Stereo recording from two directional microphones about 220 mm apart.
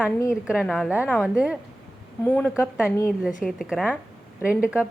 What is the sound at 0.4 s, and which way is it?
A woman's voice, centre (ahead or behind).